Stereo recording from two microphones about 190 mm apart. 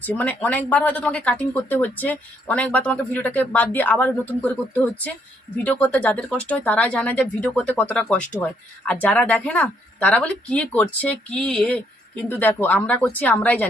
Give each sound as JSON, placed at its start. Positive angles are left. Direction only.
{"t": 0.0, "sound": "speech", "side_deg": 10}